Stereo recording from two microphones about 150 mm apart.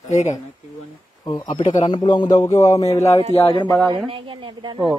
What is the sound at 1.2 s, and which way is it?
A man's voice, 25° left (ahead or behind).